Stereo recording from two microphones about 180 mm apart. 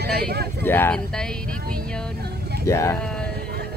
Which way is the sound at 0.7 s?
10° left (ahead or behind).